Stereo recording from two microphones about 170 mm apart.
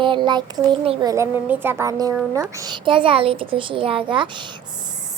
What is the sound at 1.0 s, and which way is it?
A woman's voice, 15° right (ahead or behind).